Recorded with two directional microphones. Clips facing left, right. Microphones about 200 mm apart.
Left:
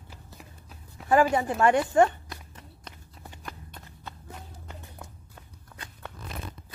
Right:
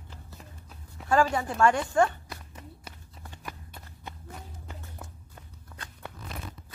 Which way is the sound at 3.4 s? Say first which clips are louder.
Even; 10° right (ahead or behind).